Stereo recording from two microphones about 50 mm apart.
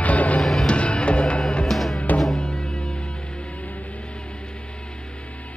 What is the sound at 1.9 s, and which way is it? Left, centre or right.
Music, left.